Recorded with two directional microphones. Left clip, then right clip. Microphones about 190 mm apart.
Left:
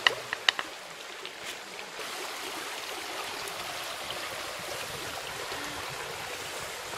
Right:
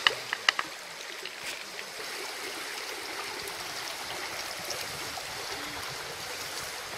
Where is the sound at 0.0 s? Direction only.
20° left (ahead or behind).